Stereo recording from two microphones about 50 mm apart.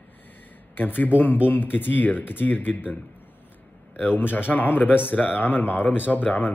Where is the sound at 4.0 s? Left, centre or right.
Left.